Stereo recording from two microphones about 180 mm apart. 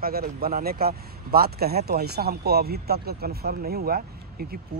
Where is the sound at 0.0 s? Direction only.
55° right (ahead or behind).